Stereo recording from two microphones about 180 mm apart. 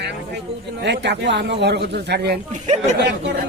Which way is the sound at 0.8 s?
70° right (ahead or behind).